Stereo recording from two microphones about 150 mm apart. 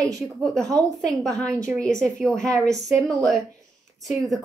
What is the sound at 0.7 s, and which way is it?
Speech, 25° right (ahead or behind).